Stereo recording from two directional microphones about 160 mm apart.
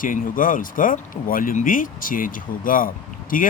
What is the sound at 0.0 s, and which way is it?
Speech, 60° left (ahead or behind).